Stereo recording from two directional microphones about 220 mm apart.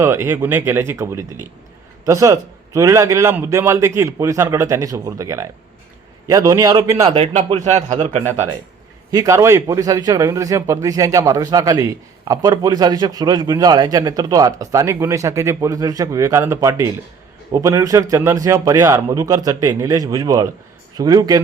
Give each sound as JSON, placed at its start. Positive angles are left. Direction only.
{"t": 0.0, "sound": "a man's voice", "side_deg": -10}
{"t": 7.1, "sound": "a man's voice", "side_deg": -30}
{"t": 9.1, "sound": "a man's voice", "side_deg": -15}